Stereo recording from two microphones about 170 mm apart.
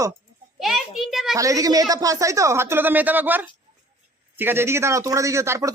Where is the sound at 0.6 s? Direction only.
Centre (ahead or behind).